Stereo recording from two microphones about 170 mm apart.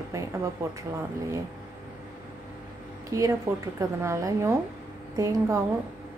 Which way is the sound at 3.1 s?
20° right (ahead or behind).